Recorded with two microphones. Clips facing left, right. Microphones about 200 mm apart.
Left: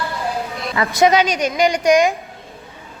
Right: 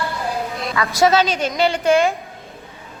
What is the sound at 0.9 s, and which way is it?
A child's voice, 15° left (ahead or behind).